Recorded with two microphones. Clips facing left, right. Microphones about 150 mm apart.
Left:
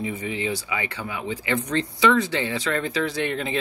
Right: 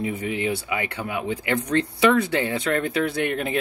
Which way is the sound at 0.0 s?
55° right (ahead or behind).